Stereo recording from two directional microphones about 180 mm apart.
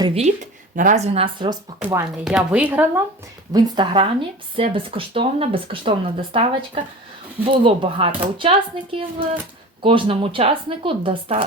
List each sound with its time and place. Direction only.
0.1 s speech: 35° right (ahead or behind)
1.8 s speech: 10° right (ahead or behind)
3.5 s speech: 30° right (ahead or behind)